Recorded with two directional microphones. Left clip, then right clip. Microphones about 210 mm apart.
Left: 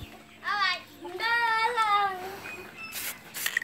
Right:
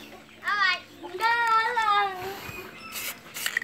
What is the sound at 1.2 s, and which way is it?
Child singing, 30° left (ahead or behind).